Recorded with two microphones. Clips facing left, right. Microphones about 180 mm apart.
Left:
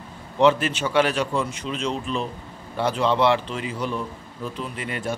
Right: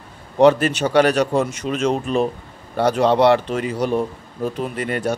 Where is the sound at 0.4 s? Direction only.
40° right (ahead or behind).